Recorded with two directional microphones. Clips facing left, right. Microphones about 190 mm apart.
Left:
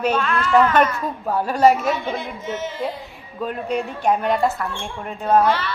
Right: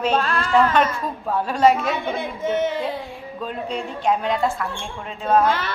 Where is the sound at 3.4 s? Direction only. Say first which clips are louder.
Left 4 dB; 5° left (ahead or behind).